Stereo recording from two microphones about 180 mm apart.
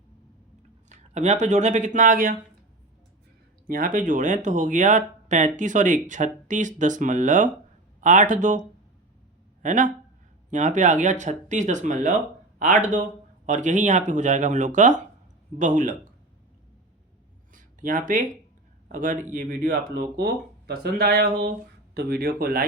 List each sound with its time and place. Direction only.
0.9 s speech: 40° right (ahead or behind)
3.7 s speech: 50° right (ahead or behind)
9.6 s speech: 45° right (ahead or behind)
17.5 s a sound: 45° right (ahead or behind)
18.9 s speech: 45° right (ahead or behind)
20.1 s speech: 60° right (ahead or behind)